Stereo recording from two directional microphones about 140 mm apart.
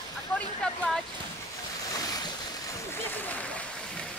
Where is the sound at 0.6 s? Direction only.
5° left (ahead or behind).